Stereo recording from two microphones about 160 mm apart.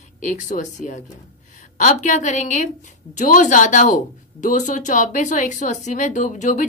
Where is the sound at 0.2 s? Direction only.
50° left (ahead or behind).